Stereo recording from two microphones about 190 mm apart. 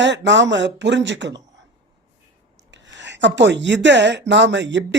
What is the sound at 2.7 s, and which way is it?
Speech, 70° right (ahead or behind).